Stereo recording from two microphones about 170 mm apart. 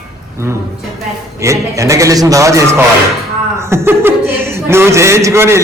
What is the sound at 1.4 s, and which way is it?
A man's voice, 15° right (ahead or behind).